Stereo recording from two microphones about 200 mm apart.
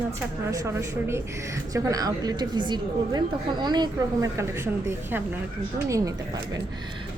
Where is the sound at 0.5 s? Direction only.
15° right (ahead or behind).